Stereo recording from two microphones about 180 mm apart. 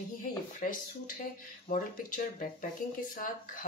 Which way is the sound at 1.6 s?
50° left (ahead or behind).